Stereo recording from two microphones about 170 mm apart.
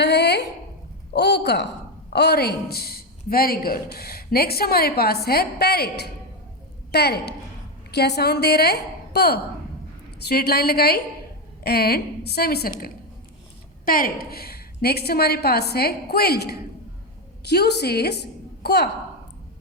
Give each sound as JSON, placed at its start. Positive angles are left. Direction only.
{"t": 0.0, "sound": "a sound", "side_deg": 75}
{"t": 1.1, "sound": "a woman's voice", "side_deg": 85}
{"t": 13.8, "sound": "a woman's voice", "side_deg": 55}